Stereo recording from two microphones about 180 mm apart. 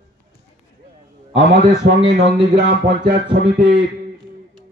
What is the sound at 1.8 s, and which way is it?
Speech, 70° right (ahead or behind).